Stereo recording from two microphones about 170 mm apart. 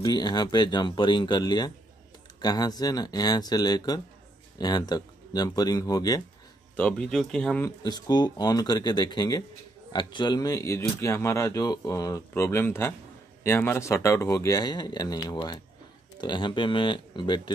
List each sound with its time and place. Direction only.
0.0 s speech: 25° left (ahead or behind)
6.8 s speech: 5° left (ahead or behind)
7.6 s speech: 25° left (ahead or behind)